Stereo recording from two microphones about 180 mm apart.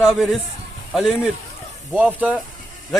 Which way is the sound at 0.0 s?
Centre (ahead or behind).